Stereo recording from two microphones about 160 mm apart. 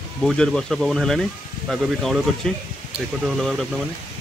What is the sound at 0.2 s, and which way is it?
Speech, 5° left (ahead or behind).